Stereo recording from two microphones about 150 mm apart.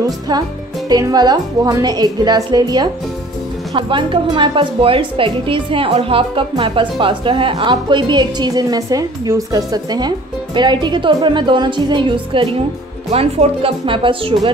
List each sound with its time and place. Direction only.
0.8 s a woman's voice: 25° right (ahead or behind)